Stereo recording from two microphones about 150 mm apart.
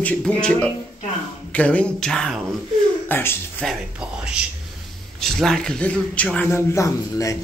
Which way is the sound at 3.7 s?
5° right (ahead or behind).